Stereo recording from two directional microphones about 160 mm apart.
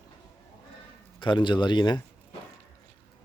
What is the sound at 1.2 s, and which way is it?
Speech, 30° left (ahead or behind).